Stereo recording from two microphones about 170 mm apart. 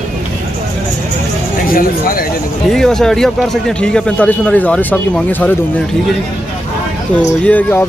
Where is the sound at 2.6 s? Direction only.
Centre (ahead or behind).